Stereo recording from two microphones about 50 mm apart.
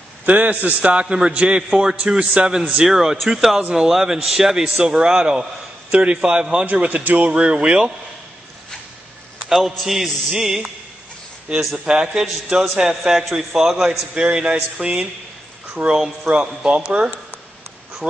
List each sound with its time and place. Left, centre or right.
0.2 s a man's voice: right
2.8 s a man's voice: centre
6.6 s a man's voice: right
7.2 s a man's voice: right
9.5 s a man's voice: centre
11.7 s a man's voice: centre